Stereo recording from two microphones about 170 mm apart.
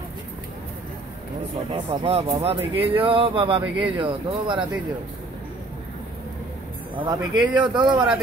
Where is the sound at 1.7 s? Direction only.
30° right (ahead or behind).